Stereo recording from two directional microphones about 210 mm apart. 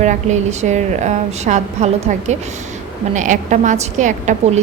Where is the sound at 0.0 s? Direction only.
35° right (ahead or behind).